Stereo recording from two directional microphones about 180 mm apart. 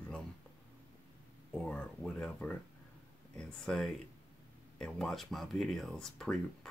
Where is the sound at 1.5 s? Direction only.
5° left (ahead or behind).